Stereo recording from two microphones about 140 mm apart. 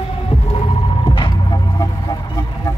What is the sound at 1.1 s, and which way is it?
Music, 35° left (ahead or behind).